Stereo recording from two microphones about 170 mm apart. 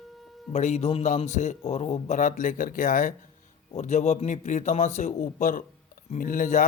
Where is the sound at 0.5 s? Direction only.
40° left (ahead or behind).